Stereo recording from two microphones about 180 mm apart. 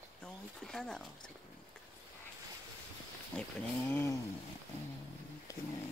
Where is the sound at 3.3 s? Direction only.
10° left (ahead or behind).